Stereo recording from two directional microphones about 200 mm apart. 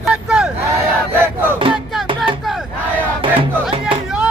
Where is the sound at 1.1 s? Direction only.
10° right (ahead or behind).